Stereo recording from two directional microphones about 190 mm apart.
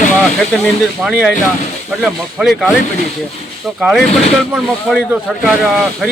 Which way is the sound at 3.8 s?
Centre (ahead or behind).